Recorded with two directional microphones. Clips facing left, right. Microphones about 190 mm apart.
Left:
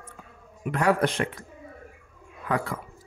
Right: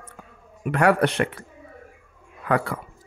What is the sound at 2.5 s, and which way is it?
Speech, 65° right (ahead or behind).